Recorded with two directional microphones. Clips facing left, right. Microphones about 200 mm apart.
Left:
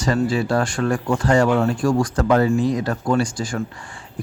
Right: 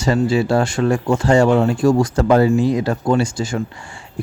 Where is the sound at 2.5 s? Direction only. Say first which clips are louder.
Right 3 dB; centre (ahead or behind).